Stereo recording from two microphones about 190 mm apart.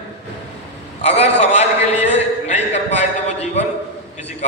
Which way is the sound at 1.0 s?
35° left (ahead or behind).